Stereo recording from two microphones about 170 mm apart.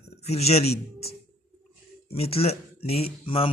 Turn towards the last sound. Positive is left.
turn(degrees=35)  # may be behind; listen again after turning